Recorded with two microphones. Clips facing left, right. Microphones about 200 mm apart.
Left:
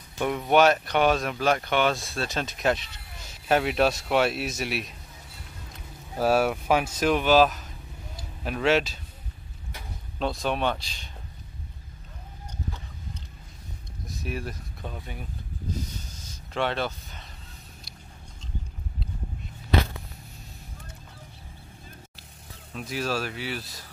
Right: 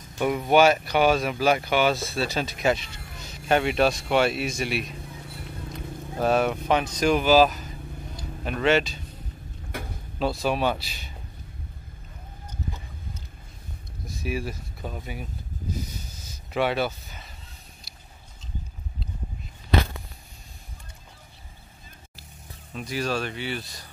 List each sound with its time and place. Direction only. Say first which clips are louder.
0.2 s speech: right 2 dB; centre (ahead or behind)
9.7 s a sound: right 11 dB; 55° right (ahead or behind)
10.1 s speech: right 2 dB; 5° right (ahead or behind)
14.0 s a sound: right 3 dB; 5° right (ahead or behind)
16.3 s speech: right 3 dB; 10° right (ahead or behind)
22.8 s speech: right 1 dB; centre (ahead or behind)